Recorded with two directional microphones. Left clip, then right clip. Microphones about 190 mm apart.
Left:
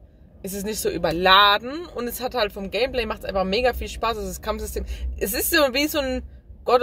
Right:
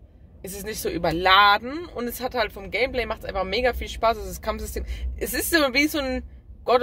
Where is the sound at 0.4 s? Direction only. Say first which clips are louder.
Left 3 dB; centre (ahead or behind).